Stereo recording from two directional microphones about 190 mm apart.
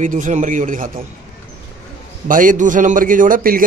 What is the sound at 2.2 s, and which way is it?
A man's voice, 45° right (ahead or behind).